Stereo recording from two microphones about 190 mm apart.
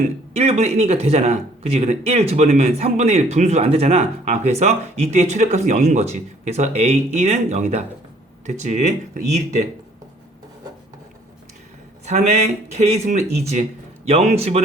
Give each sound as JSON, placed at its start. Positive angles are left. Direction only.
{"t": 0.3, "sound": "speech", "side_deg": -35}
{"t": 12.0, "sound": "speech", "side_deg": -35}